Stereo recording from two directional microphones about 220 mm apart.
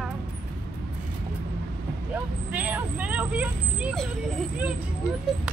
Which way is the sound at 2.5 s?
5° right (ahead or behind).